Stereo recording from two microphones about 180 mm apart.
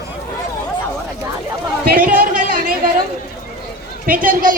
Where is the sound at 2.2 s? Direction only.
50° right (ahead or behind).